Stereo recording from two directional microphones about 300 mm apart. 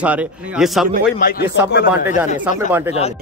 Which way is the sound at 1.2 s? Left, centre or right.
Left.